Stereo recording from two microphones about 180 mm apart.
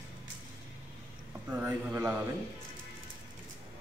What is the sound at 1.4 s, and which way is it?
Speech, 10° right (ahead or behind).